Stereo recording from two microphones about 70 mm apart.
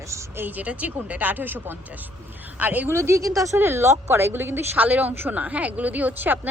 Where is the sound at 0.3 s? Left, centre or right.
Right.